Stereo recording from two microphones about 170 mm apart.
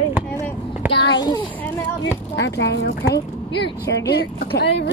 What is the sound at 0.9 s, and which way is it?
Speech, 25° left (ahead or behind).